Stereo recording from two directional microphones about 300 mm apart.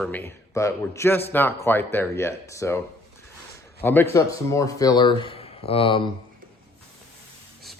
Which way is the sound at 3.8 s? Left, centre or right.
Centre.